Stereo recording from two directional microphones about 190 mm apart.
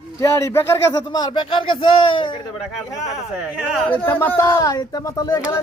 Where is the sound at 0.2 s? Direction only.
15° left (ahead or behind).